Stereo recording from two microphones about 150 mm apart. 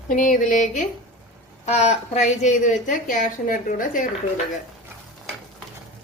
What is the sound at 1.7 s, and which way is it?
A woman's voice, 45° left (ahead or behind).